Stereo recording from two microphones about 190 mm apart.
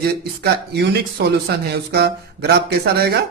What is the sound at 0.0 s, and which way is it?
Speech, 55° right (ahead or behind).